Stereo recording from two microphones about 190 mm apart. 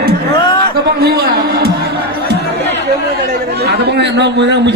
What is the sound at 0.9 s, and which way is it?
Music, 55° right (ahead or behind).